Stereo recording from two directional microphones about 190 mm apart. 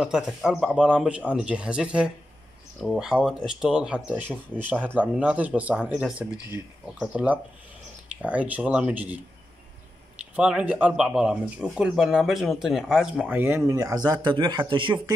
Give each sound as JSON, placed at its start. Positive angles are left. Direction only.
{"t": 0.0, "sound": "speech", "side_deg": -5}
{"t": 10.3, "sound": "speech", "side_deg": -5}